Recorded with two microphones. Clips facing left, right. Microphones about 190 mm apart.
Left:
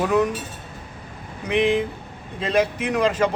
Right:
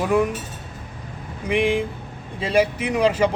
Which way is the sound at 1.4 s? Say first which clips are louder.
Left 1 dB; 10° right (ahead or behind).